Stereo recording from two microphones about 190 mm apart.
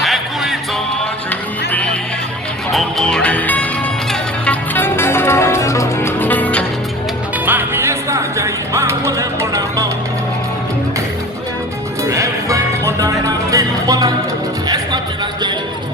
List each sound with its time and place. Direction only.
0.0 s music: centre (ahead or behind)
2.7 s music: 5° left (ahead or behind)
7.4 s music: 10° right (ahead or behind)
12.0 s music: 15° right (ahead or behind)